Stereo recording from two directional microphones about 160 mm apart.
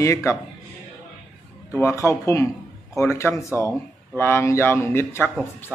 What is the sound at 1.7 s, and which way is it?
A man's voice, 20° left (ahead or behind).